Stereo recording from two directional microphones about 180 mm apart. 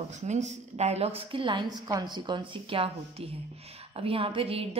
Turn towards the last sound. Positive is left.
turn(degrees=-30)  # may be behind; listen again after turning